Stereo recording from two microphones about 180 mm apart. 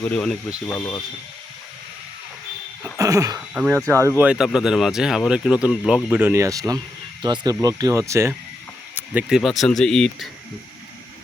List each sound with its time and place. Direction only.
0.0 s speech: 5° left (ahead or behind)
0.7 s speech: 15° left (ahead or behind)
2.8 s a sound: 20° right (ahead or behind)
3.5 s speech: 5° right (ahead or behind)
3.8 s speech: 15° right (ahead or behind); by 10.2 s 5° left (ahead or behind)